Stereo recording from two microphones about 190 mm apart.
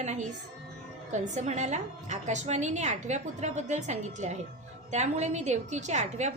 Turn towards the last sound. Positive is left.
turn(degrees=-40)  # may be behind; listen again after turning